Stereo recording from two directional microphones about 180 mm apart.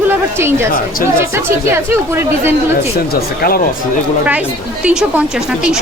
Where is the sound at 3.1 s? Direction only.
55° left (ahead or behind).